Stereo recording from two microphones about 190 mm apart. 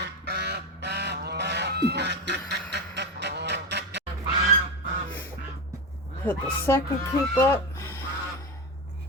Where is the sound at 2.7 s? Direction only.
65° right (ahead or behind).